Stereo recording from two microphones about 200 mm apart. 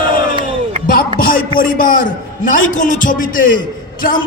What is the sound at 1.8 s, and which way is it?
A man's voice, 40° left (ahead or behind).